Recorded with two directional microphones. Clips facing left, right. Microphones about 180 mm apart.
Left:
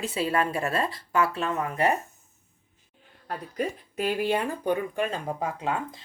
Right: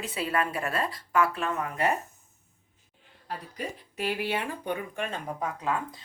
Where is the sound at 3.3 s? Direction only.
45° left (ahead or behind).